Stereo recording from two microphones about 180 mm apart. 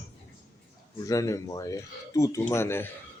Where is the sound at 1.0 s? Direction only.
20° left (ahead or behind).